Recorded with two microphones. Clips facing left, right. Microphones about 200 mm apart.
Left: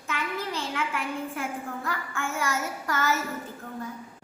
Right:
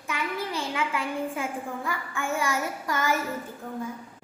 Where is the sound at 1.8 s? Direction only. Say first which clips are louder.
Right 2 dB; 15° right (ahead or behind).